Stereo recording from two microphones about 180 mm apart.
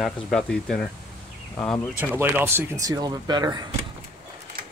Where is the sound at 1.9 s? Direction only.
10° right (ahead or behind).